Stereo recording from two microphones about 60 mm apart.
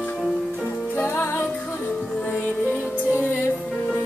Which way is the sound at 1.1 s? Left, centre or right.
Left.